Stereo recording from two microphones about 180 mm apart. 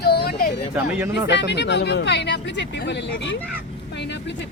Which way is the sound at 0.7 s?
10° right (ahead or behind).